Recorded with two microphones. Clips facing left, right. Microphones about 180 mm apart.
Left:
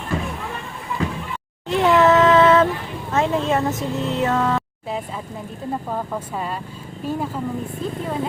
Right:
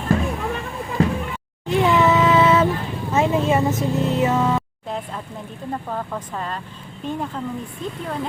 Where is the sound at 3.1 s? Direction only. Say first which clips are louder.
Right 1 dB; 5° right (ahead or behind).